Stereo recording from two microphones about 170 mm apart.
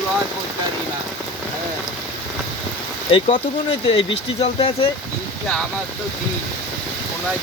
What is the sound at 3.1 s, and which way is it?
Speech, 35° left (ahead or behind).